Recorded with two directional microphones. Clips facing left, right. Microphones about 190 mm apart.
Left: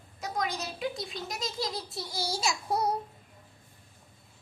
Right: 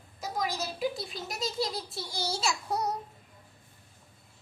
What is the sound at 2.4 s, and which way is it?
Child singing, 30° left (ahead or behind).